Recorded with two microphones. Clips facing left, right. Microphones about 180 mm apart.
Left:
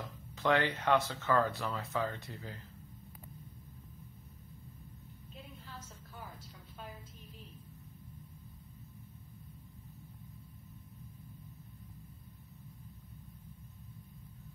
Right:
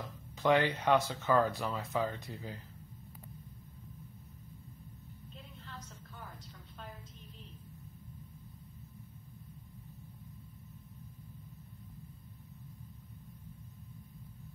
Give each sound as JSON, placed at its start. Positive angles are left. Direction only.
{"t": 0.4, "sound": "speech", "side_deg": -15}